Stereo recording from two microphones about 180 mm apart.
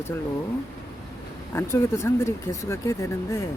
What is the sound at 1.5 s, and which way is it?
Speech, 15° left (ahead or behind).